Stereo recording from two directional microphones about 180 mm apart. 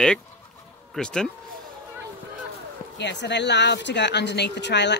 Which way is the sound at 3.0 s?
75° left (ahead or behind).